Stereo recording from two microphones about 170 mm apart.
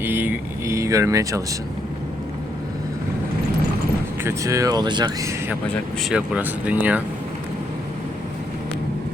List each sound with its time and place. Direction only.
0.0 s vehicle: 10° right (ahead or behind)
4.2 s speech: 15° right (ahead or behind)
5.6 s speech: centre (ahead or behind)